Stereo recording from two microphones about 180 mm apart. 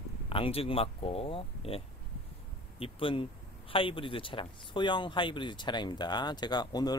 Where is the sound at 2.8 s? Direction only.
30° left (ahead or behind).